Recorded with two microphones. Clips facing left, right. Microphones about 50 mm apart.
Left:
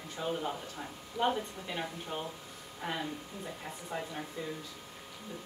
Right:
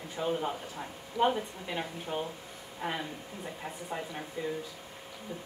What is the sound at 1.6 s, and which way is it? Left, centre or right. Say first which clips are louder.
A woman's voice: right 2 dB; centre.